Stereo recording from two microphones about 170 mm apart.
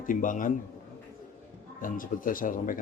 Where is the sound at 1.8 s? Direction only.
55° left (ahead or behind).